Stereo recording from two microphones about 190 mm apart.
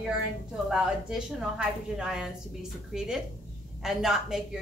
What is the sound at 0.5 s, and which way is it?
A woman's voice, 5° right (ahead or behind).